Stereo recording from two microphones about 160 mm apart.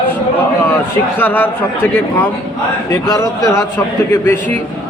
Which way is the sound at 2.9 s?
20° left (ahead or behind).